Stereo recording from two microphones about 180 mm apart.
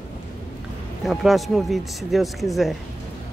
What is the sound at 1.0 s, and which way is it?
Speech, centre (ahead or behind).